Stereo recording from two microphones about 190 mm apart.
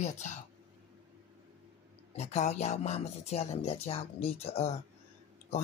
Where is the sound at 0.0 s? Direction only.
40° left (ahead or behind).